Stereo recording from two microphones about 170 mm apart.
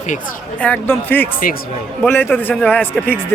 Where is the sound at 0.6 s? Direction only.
10° left (ahead or behind).